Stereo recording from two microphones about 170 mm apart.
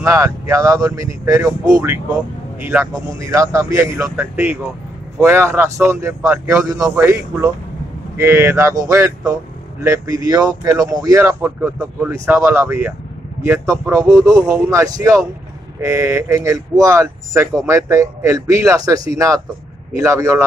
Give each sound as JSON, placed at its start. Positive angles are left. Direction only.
{"t": 0.0, "sound": "speech", "side_deg": -20}